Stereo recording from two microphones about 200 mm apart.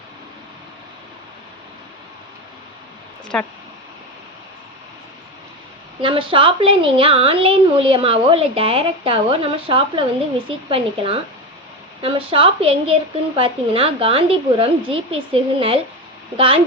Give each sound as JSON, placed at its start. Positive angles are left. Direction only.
{"t": 3.3, "sound": "speech", "side_deg": 5}
{"t": 6.0, "sound": "a woman's voice", "side_deg": -25}